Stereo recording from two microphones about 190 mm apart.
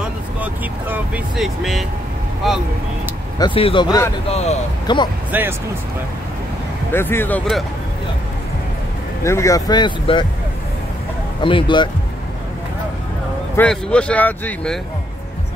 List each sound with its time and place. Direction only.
0.4 s speech: 10° right (ahead or behind)
3.3 s speech: 25° left (ahead or behind)
4.3 s speech: 35° left (ahead or behind)
5.3 s speech: 10° right (ahead or behind)
6.9 s speech: 10° left (ahead or behind)
9.2 s speech: 15° left (ahead or behind)
11.4 s speech: 25° left (ahead or behind)
13.6 s speech: 5° left (ahead or behind)